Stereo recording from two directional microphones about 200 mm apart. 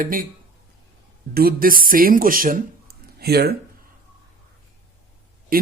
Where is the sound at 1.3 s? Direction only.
45° right (ahead or behind).